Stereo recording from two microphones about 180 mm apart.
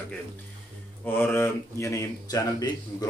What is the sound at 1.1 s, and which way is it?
Speech, 10° left (ahead or behind).